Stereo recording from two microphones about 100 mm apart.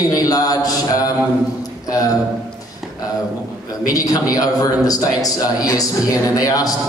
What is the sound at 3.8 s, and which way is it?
A man's voice, 35° left (ahead or behind).